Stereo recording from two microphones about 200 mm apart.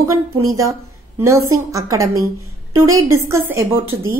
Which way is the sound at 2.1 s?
90° right.